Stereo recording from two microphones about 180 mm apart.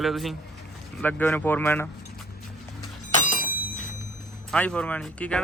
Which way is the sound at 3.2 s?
45° left (ahead or behind).